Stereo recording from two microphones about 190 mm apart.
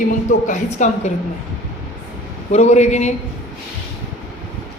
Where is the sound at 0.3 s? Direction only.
40° left (ahead or behind).